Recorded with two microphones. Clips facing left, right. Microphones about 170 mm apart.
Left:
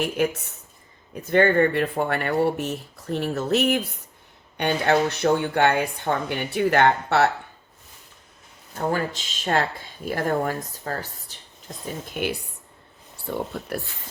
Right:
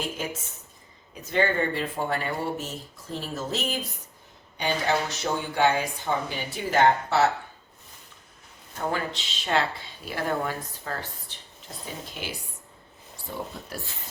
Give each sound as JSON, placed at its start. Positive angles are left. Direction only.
{"t": 1.2, "sound": "speech", "side_deg": 55}
{"t": 8.9, "sound": "speech", "side_deg": 45}
{"t": 12.1, "sound": "speech", "side_deg": 60}